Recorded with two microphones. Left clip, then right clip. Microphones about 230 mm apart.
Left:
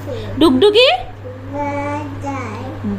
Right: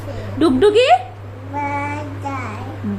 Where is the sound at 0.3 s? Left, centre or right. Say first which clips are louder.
Left 2 dB; centre.